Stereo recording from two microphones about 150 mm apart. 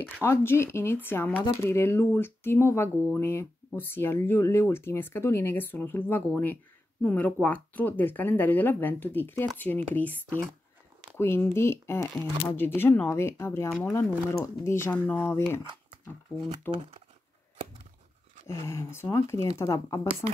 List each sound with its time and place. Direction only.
0.0 s speech: 15° left (ahead or behind)
18.5 s speech: 20° left (ahead or behind)